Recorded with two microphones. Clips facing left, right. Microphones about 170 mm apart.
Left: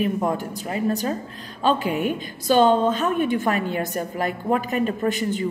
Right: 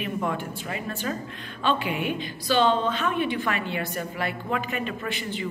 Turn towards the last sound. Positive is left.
turn(degrees=45)  # may be behind; listen again after turning